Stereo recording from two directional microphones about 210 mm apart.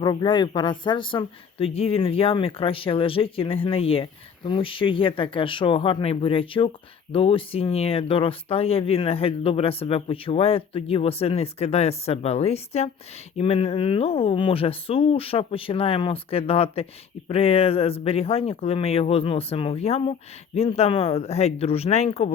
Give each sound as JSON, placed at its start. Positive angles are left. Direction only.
{"t": 0.0, "sound": "speech", "side_deg": 20}